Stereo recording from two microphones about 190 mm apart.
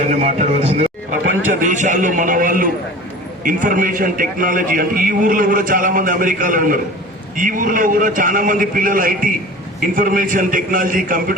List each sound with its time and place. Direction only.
0.2 s a man's voice: 35° right (ahead or behind)